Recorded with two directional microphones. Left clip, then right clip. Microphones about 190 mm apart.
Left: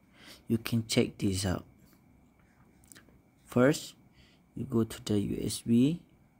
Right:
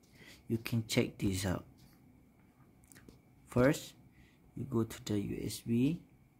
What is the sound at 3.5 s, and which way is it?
Speech, 10° left (ahead or behind).